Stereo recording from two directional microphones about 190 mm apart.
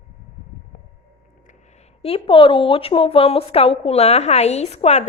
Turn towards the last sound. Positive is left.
turn(degrees=35)  # may be behind; listen again after turning